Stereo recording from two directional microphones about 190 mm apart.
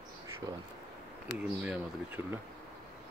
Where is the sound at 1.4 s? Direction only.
5° right (ahead or behind).